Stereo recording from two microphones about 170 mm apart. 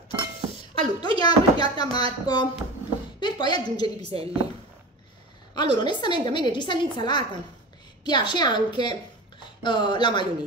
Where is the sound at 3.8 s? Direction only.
35° right (ahead or behind).